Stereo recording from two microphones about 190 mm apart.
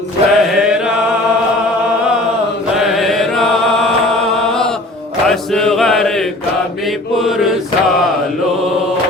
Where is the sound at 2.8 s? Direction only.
Centre (ahead or behind).